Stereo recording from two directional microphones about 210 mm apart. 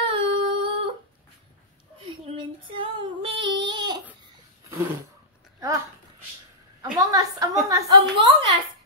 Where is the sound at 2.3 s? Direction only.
25° right (ahead or behind).